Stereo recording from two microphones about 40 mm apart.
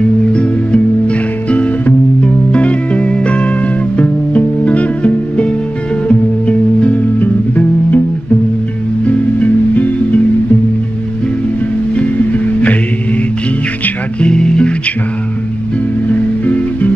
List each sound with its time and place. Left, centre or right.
0.3 s music: left
7.2 s music: left
9.0 s music: left
11.9 s music: left
14.2 s music: left
16.1 s music: left